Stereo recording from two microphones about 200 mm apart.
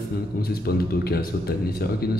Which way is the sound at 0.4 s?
50° left (ahead or behind).